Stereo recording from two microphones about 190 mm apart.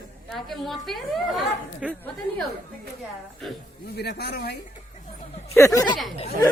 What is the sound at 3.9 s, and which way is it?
Speech, 60° left (ahead or behind).